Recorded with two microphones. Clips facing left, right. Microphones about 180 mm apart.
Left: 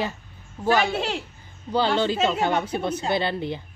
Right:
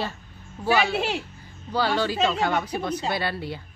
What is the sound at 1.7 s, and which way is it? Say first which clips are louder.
Speech: left 2 dB; 25° left (ahead or behind).